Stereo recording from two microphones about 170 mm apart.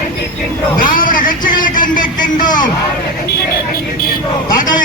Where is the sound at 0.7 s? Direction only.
55° left (ahead or behind).